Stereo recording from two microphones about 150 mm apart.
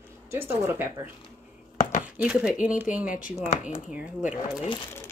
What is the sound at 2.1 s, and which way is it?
Speech, 5° right (ahead or behind).